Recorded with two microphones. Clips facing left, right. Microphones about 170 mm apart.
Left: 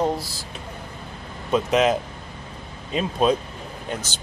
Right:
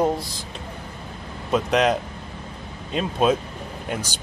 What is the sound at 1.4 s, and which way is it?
Speech, centre (ahead or behind).